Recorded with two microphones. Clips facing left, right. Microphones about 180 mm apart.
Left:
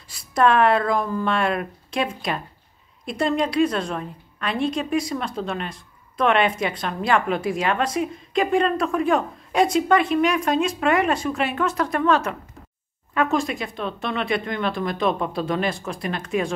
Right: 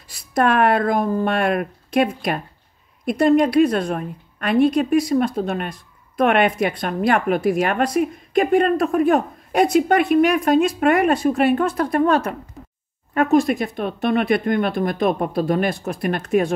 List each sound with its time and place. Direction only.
0.4 s speech: 50° right (ahead or behind)
5.1 s speech: 45° right (ahead or behind)
13.1 s speech: 55° right (ahead or behind)
15.9 s speech: 60° right (ahead or behind)
16.3 s speech: 50° right (ahead or behind)